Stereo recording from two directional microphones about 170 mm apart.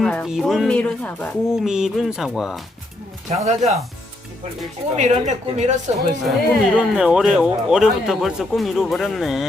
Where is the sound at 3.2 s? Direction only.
40° right (ahead or behind).